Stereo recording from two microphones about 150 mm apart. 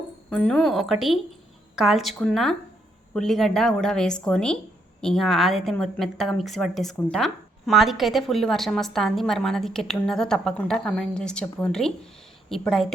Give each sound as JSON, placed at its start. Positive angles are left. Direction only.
{"t": 0.3, "sound": "a woman's voice", "side_deg": 5}